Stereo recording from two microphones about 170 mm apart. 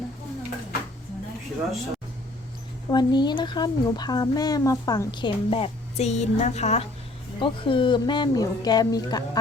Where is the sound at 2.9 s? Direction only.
25° left (ahead or behind).